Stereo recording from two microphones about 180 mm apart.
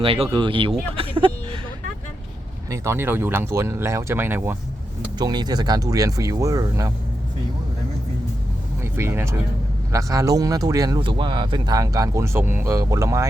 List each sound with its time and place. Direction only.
0.0 s speech: 30° right (ahead or behind)
2.6 s speech: 15° right (ahead or behind)
5.1 s speech: 25° right (ahead or behind)
8.8 s speech: 15° right (ahead or behind)